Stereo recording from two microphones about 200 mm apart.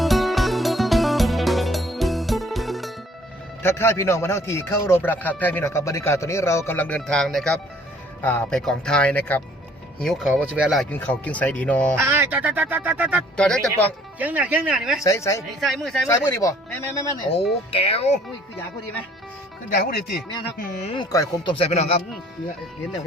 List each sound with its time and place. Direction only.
0.0 s music: centre (ahead or behind)
3.6 s speech: 10° left (ahead or behind)
11.9 s speech: 10° right (ahead or behind)
13.3 s speech: 5° left (ahead or behind)
14.2 s speech: 10° right (ahead or behind)
15.0 s speech: 15° left (ahead or behind)
15.6 s speech: centre (ahead or behind)
16.0 s speech: 15° left (ahead or behind)
17.7 s speech: 30° left (ahead or behind)
20.8 s speech: 25° left (ahead or behind)
21.5 s speech: 30° left (ahead or behind)